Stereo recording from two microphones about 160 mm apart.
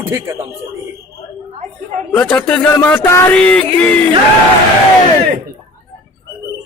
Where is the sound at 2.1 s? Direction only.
5° left (ahead or behind).